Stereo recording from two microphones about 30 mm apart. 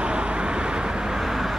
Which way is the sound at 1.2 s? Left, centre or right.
Centre.